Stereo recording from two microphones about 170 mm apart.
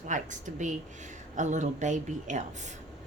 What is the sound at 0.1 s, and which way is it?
Speech, 45° right (ahead or behind).